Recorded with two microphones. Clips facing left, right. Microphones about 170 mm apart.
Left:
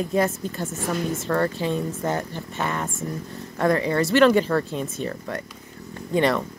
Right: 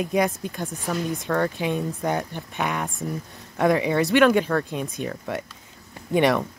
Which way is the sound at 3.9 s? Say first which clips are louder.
Left 2 dB; centre (ahead or behind).